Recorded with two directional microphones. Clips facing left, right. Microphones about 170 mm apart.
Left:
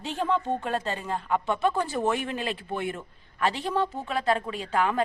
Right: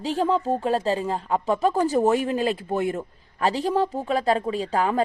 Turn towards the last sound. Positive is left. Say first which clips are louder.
# right 3 dB
turn(degrees=-35)  # may be behind; listen again after turning